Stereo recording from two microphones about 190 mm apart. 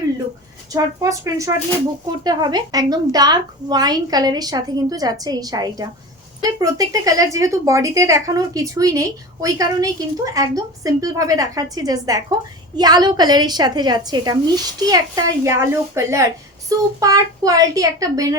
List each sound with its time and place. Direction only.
0.7 s a woman's voice: 15° right (ahead or behind)